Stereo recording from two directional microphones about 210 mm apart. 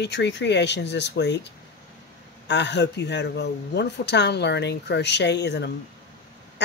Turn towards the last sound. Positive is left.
turn(degrees=55)  # may be behind; listen again after turning